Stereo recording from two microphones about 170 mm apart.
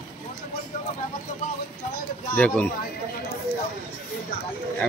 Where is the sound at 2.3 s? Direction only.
10° left (ahead or behind).